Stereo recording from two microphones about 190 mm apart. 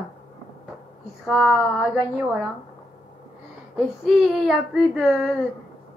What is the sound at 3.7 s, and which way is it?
Speech, centre (ahead or behind).